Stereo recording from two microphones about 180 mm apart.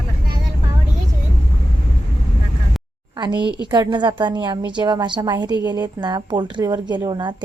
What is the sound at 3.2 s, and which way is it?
A woman's voice, 25° right (ahead or behind).